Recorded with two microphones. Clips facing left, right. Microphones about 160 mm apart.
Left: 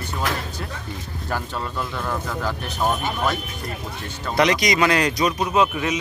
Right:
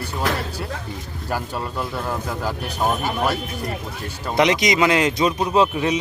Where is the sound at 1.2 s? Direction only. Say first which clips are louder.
Right 2 dB; 10° right (ahead or behind).